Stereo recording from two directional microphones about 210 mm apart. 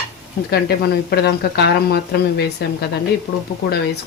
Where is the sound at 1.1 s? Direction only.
50° left (ahead or behind).